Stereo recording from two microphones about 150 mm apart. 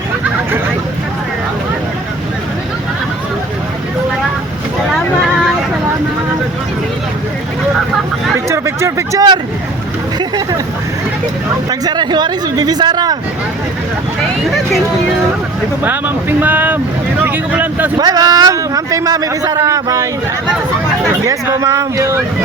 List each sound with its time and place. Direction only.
8.4 s a sound: 20° right (ahead or behind)
11.7 s a man's voice: 30° right (ahead or behind)
15.8 s speech: 10° right (ahead or behind)
17.9 s a man's voice: 25° right (ahead or behind)
21.2 s a man's voice: 20° right (ahead or behind)